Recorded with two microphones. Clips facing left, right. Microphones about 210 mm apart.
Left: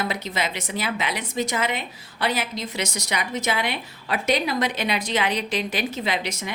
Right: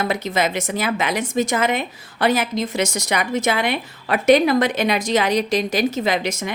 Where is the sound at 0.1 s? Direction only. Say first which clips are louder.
Right 7 dB; 50° right (ahead or behind).